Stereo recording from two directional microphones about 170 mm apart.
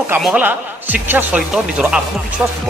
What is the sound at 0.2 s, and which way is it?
Speech, 10° right (ahead or behind).